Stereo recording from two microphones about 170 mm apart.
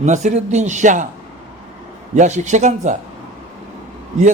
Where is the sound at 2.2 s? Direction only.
45° right (ahead or behind).